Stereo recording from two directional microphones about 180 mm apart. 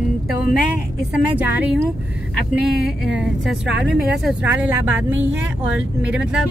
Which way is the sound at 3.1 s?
5° right (ahead or behind).